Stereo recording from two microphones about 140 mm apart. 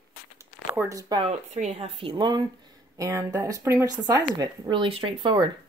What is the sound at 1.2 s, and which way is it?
Speech, 50° right (ahead or behind).